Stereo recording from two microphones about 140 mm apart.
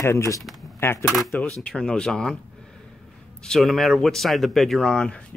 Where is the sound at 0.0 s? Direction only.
20° left (ahead or behind).